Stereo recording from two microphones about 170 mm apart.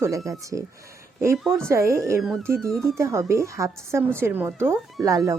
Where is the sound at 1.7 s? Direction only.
15° right (ahead or behind).